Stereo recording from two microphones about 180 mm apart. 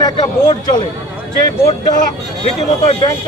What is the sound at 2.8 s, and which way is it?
Speech, 35° left (ahead or behind).